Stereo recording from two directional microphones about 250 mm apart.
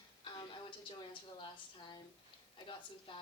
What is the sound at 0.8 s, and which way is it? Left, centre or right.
Speech, centre.